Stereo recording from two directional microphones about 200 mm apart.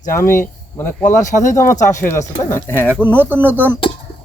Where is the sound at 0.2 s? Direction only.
10° left (ahead or behind).